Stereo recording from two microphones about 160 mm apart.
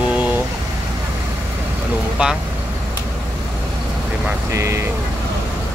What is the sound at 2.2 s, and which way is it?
Speech, 5° right (ahead or behind).